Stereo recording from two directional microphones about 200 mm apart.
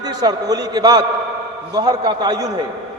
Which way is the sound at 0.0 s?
20° right (ahead or behind).